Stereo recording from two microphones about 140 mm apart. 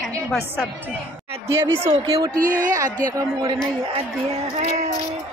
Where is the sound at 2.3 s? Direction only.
75° right (ahead or behind).